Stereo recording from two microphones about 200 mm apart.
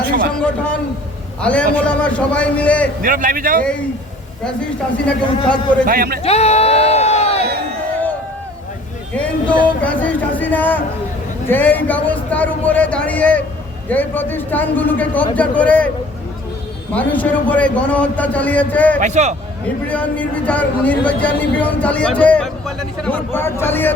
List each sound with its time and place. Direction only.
0.0 s a sound: 45° right (ahead or behind)
0.3 s a man's voice: 5° left (ahead or behind)
3.0 s a man's voice: 45° right (ahead or behind)
5.0 s speech: 5° left (ahead or behind)
5.8 s a man's voice: 45° right (ahead or behind)
6.2 s speech: 30° left (ahead or behind)
9.1 s speech: 5° left (ahead or behind)
16.9 s speech: 5° left (ahead or behind)
18.9 s a man's voice: 35° right (ahead or behind)
19.9 s speech: 5° left (ahead or behind)